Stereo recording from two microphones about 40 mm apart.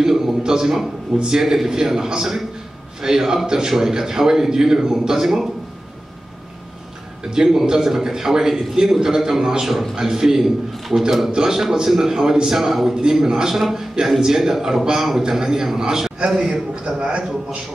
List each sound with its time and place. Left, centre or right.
0.0 s a sound: centre
0.4 s a man's voice: centre
7.2 s a man's voice: centre
17.0 s a man's voice: right